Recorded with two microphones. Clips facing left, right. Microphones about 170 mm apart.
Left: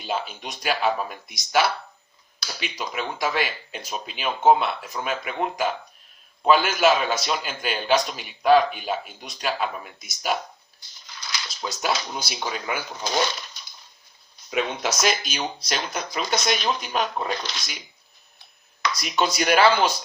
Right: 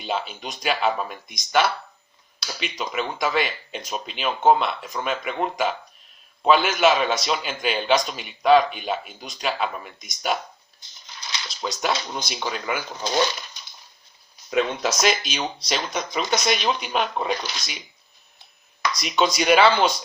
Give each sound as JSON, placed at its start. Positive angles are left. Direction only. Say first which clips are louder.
{"t": 0.0, "sound": "a man's voice", "louder": "right 1 dB", "side_deg": 0}
{"t": 10.8, "sound": "a sound", "louder": "even", "side_deg": -20}
{"t": 11.6, "sound": "a man's voice", "louder": "right 1 dB", "side_deg": 5}
{"t": 14.5, "sound": "a man's voice", "louder": "right 3 dB", "side_deg": 0}
{"t": 18.9, "sound": "a man's voice", "louder": "right 2 dB", "side_deg": 0}